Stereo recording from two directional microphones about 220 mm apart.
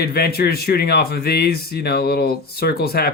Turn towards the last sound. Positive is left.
turn(degrees=45)  # may be behind; listen again after turning